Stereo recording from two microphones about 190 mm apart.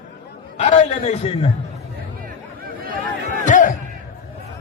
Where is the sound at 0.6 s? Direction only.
35° left (ahead or behind).